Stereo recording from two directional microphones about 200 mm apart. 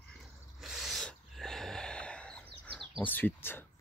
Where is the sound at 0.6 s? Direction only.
Centre (ahead or behind).